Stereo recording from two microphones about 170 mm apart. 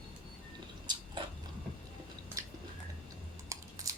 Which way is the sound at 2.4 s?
20° right (ahead or behind).